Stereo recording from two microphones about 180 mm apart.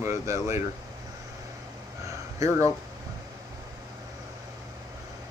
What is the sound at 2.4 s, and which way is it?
Speech, 20° right (ahead or behind).